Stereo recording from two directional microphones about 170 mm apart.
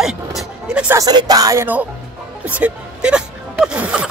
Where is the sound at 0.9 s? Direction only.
25° right (ahead or behind).